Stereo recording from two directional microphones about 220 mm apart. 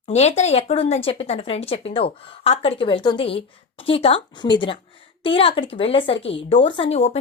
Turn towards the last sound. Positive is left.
turn(degrees=30)  # may be behind; listen again after turning